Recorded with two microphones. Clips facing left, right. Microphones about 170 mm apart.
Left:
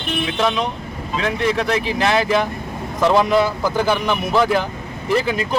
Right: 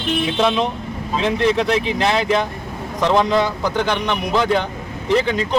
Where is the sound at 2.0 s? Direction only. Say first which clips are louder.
Left 1 dB; centre (ahead or behind).